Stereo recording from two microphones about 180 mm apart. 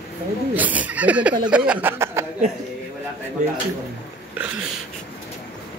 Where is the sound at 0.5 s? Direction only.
10° right (ahead or behind).